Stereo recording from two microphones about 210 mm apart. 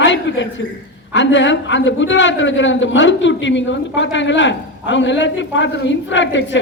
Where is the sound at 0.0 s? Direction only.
60° left (ahead or behind).